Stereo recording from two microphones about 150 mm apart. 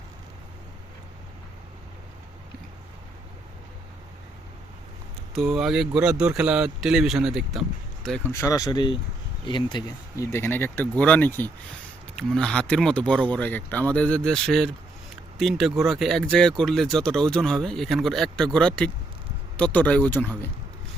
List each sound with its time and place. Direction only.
5.3 s speech: centre (ahead or behind)
8.3 s speech: 20° left (ahead or behind)